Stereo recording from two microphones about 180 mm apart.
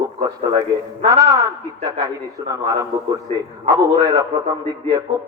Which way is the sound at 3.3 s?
35° right (ahead or behind).